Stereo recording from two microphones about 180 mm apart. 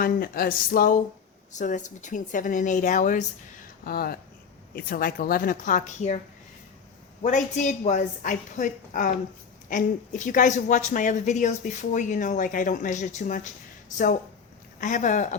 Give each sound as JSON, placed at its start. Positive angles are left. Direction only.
{"t": 0.0, "sound": "speech", "side_deg": 55}
{"t": 3.8, "sound": "speech", "side_deg": 55}
{"t": 7.2, "sound": "speech", "side_deg": 40}
{"t": 14.8, "sound": "speech", "side_deg": 45}